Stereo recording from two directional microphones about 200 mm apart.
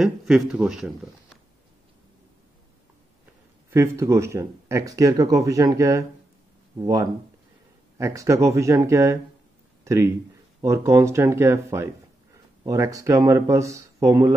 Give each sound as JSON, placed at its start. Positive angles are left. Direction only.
{"t": 0.0, "sound": "speech", "side_deg": 0}
{"t": 3.7, "sound": "speech", "side_deg": -15}
{"t": 8.0, "sound": "speech", "side_deg": -15}